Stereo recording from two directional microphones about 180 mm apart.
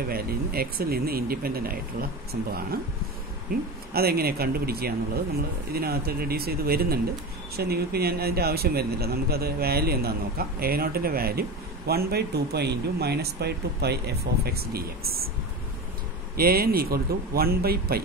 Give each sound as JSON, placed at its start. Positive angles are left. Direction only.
{"t": 0.1, "sound": "speech", "side_deg": -55}
{"t": 3.5, "sound": "speech", "side_deg": -50}
{"t": 16.3, "sound": "speech", "side_deg": -55}